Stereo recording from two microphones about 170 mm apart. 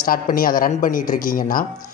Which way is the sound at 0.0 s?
55° left (ahead or behind).